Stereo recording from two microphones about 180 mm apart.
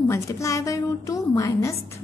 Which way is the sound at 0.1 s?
15° left (ahead or behind).